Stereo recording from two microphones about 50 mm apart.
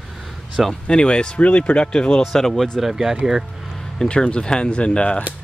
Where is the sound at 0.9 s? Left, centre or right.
Centre.